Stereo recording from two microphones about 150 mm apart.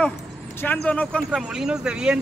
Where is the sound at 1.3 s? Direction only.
5° right (ahead or behind).